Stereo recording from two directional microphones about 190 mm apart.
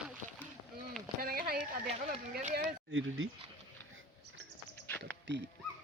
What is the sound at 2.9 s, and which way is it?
Speech, 90° right.